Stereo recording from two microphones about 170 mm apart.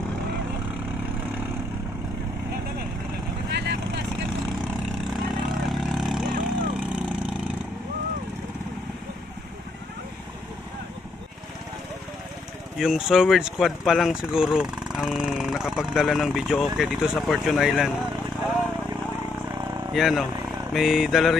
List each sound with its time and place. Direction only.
3.5 s vehicle: 75° right (ahead or behind)
5.1 s vehicle: centre (ahead or behind)
12.7 s speech: centre (ahead or behind)
19.9 s speech: centre (ahead or behind)